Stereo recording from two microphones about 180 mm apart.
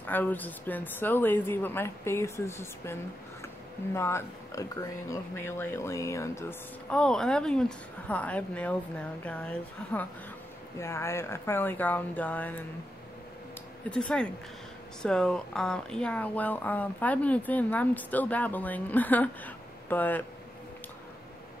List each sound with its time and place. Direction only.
0.0 s speech: 10° left (ahead or behind)
6.9 s speech: 5° left (ahead or behind)
13.8 s speech: 5° left (ahead or behind)